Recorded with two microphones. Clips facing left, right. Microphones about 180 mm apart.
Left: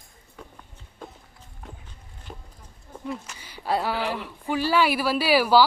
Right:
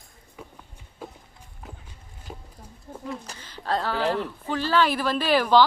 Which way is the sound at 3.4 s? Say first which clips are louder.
Left 1 dB; 10° left (ahead or behind).